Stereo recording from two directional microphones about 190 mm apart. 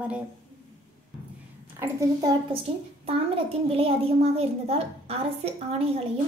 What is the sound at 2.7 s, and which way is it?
A child's voice, 35° right (ahead or behind).